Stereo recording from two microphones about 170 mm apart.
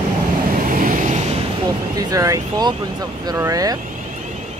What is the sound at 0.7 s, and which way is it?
Vehicle, 50° right (ahead or behind).